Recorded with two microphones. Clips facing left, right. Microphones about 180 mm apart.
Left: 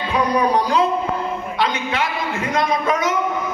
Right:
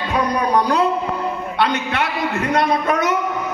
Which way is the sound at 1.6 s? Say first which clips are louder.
Right 2 dB; 65° right (ahead or behind).